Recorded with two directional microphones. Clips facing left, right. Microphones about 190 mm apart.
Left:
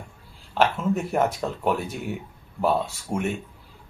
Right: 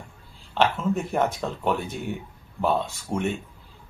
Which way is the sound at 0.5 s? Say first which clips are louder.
Left 1 dB; 5° left (ahead or behind).